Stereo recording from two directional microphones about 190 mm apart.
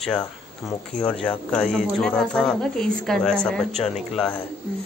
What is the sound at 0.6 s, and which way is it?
Speech, centre (ahead or behind).